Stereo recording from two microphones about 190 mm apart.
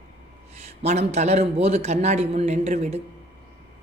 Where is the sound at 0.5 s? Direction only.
35° right (ahead or behind).